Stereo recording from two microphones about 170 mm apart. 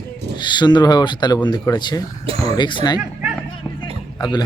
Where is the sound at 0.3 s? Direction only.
25° left (ahead or behind).